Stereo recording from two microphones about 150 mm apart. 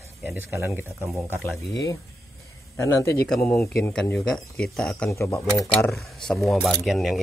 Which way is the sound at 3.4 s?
Centre (ahead or behind).